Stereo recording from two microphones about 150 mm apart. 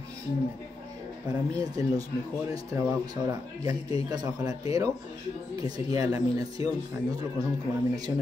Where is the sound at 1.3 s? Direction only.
25° right (ahead or behind).